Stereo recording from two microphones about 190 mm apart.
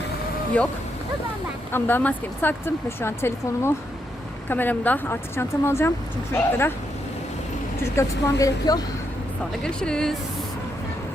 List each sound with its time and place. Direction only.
0.6 s speech: 5° left (ahead or behind)
1.7 s speech: 10° left (ahead or behind)
7.9 s speech: 15° left (ahead or behind)
9.6 s speech: 5° left (ahead or behind)